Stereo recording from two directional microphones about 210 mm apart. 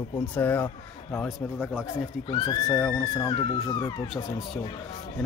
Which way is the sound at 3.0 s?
15° left (ahead or behind).